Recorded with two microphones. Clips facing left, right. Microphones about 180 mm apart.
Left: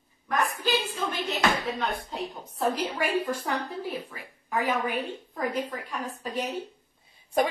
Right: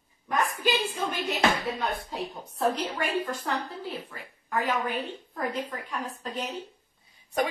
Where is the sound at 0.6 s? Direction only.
10° right (ahead or behind).